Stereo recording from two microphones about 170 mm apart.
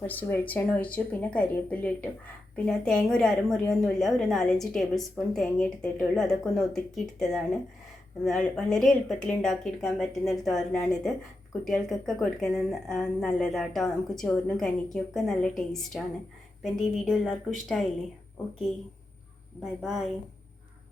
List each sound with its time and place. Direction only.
0.0 s a woman's voice: 10° left (ahead or behind)
16.6 s a woman's voice: centre (ahead or behind)
19.6 s a woman's voice: centre (ahead or behind)